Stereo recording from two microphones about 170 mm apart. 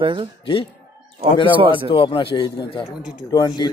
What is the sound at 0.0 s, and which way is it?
Speech, 30° right (ahead or behind).